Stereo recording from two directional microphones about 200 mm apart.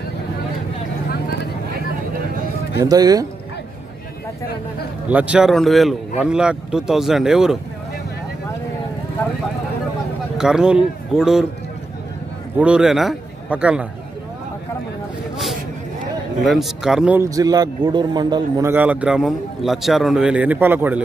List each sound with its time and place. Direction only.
2.8 s speech: 20° right (ahead or behind)
5.0 s speech: 5° right (ahead or behind)
9.2 s vehicle: 15° left (ahead or behind)
10.3 s speech: 5° right (ahead or behind)
12.5 s a man's voice: 5° right (ahead or behind)
16.4 s speech: centre (ahead or behind)